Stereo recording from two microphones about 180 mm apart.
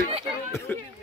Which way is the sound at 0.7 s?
10° left (ahead or behind).